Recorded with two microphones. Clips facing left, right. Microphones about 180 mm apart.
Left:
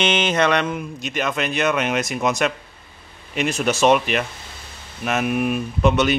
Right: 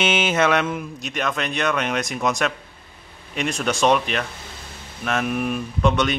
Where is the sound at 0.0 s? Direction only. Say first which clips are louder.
Left 1 dB; 5° right (ahead or behind).